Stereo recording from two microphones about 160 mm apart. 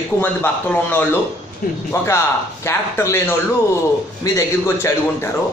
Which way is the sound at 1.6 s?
65° left (ahead or behind).